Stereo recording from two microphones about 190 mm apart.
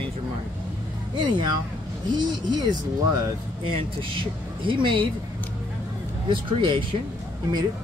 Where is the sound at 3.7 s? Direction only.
25° right (ahead or behind).